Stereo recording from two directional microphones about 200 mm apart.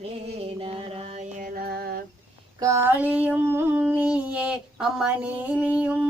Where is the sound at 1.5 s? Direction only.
50° right (ahead or behind).